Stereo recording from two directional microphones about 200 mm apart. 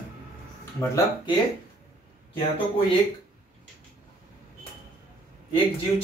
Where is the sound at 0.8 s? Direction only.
15° left (ahead or behind).